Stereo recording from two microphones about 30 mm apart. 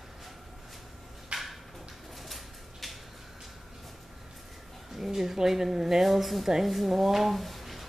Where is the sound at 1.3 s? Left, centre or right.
Right.